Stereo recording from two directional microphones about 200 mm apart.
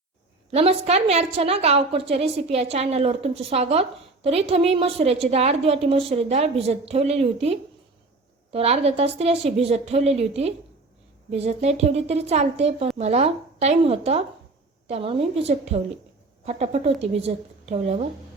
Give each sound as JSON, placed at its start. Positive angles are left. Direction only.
{"t": 0.5, "sound": "a woman's voice", "side_deg": -30}